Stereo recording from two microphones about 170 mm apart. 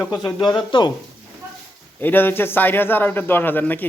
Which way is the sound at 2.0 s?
10° left (ahead or behind).